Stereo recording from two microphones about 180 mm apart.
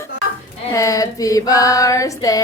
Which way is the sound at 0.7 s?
20° left (ahead or behind).